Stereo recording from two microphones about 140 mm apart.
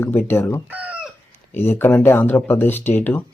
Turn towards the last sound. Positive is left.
turn(degrees=15)  # may be behind; listen again after turning